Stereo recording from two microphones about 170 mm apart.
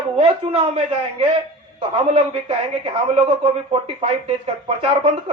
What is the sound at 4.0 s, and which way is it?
Speech, 35° right (ahead or behind).